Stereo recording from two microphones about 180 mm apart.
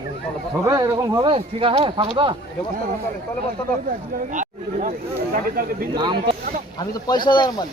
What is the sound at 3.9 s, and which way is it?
Speech, 45° right (ahead or behind).